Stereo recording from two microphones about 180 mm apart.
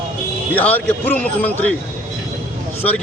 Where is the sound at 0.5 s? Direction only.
10° left (ahead or behind).